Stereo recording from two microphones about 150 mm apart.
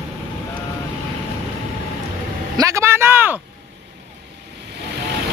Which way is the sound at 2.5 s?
20° right (ahead or behind).